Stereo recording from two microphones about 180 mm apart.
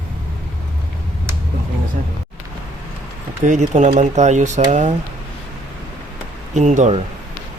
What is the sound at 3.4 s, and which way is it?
Speech, 45° right (ahead or behind).